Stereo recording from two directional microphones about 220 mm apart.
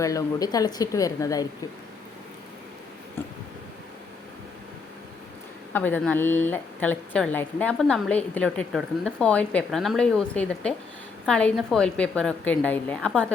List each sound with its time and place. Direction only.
0.0 s speech: 15° left (ahead or behind)
5.7 s a woman's voice: 10° left (ahead or behind)